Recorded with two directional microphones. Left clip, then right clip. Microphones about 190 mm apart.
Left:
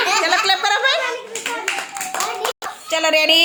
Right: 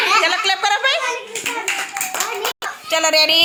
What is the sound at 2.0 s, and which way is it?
Clapping, 65° left (ahead or behind).